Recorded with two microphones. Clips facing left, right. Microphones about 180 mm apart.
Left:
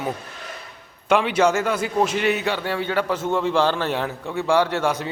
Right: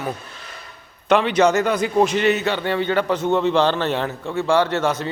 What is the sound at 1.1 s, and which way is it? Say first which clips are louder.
A man's voice: right 2 dB; 10° left (ahead or behind).